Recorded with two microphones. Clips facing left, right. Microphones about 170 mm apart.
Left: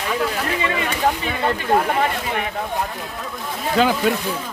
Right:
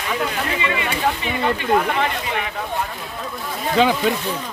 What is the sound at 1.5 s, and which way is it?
Speech, 40° left (ahead or behind).